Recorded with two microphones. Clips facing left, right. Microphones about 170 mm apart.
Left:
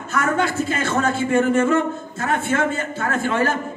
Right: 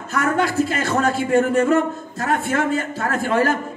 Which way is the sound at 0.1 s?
35° right (ahead or behind).